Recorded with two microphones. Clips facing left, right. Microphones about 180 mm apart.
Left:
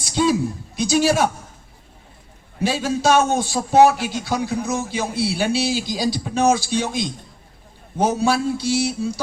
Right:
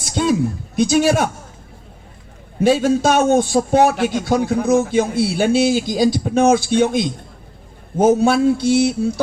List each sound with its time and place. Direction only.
0.0 s a sound: 50° right (ahead or behind)
0.8 s a man's voice: 55° right (ahead or behind)
2.6 s a man's voice: 50° right (ahead or behind)